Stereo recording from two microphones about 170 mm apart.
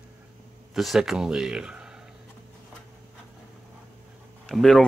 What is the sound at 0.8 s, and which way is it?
Speech, centre (ahead or behind).